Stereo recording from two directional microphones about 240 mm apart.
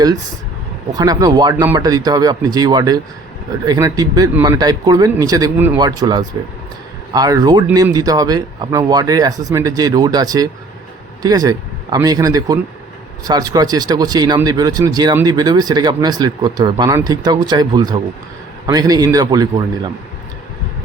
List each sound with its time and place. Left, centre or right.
0.9 s speech: centre